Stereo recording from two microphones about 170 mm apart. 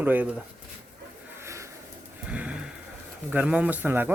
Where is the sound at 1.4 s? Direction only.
15° right (ahead or behind).